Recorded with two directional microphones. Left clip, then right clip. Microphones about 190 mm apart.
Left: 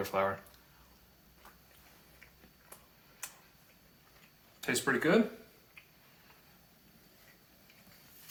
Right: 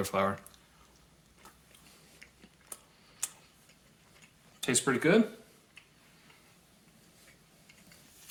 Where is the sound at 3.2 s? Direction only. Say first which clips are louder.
Right 6 dB; 45° right (ahead or behind).